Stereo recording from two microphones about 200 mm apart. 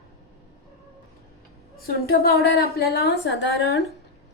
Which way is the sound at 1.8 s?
50° left (ahead or behind).